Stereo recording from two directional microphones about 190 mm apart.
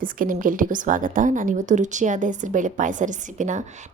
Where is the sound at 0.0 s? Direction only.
45° right (ahead or behind).